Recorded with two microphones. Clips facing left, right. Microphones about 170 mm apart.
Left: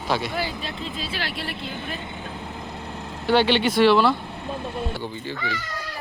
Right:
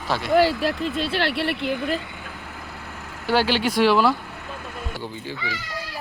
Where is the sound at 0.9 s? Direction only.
65° right (ahead or behind).